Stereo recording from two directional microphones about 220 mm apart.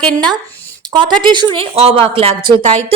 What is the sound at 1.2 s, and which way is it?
Speech, 20° right (ahead or behind).